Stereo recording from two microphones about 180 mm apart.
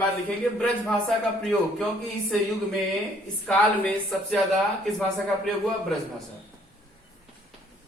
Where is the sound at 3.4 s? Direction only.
5° left (ahead or behind).